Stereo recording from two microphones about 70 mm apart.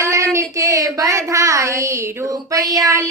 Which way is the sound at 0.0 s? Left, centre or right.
Right.